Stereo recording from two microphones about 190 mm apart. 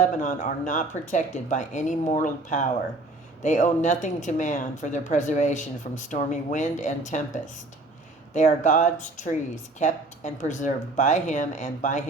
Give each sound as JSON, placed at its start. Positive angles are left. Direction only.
{"t": 0.0, "sound": "speech", "side_deg": 40}
{"t": 8.3, "sound": "speech", "side_deg": 40}